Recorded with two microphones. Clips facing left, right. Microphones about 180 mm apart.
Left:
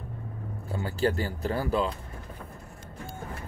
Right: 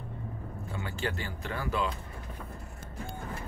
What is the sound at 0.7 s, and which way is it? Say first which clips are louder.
Speech: left 8 dB; 35° left (ahead or behind).